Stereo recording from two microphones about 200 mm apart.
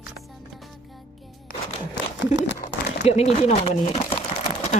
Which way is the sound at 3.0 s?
30° left (ahead or behind).